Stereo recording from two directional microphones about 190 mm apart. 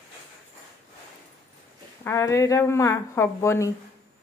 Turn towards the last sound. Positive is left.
turn(degrees=15)  # may be behind; listen again after turning